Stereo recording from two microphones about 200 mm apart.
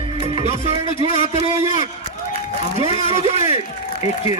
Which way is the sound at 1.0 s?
30° right (ahead or behind).